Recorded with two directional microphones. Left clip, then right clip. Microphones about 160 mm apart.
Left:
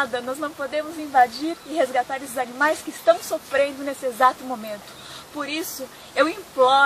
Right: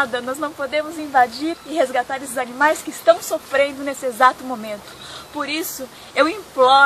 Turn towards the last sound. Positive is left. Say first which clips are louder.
# right 4 dB
turn(degrees=5)  # may be behind; listen again after turning